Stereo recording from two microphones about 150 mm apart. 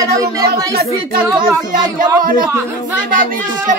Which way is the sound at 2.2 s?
70° right (ahead or behind).